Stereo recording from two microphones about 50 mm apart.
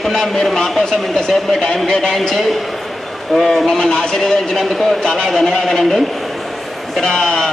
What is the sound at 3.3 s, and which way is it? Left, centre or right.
A man's voice, centre.